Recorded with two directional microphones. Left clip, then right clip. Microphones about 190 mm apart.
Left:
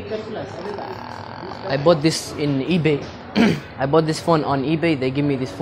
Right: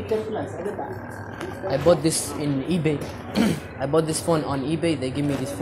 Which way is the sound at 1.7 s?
40° left (ahead or behind).